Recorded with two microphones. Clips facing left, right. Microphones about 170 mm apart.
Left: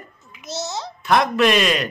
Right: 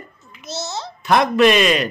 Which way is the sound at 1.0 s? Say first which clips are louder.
Right 3 dB; centre (ahead or behind).